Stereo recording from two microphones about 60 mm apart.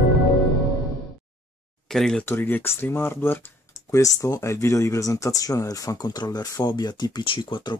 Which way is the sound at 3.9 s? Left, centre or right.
Left.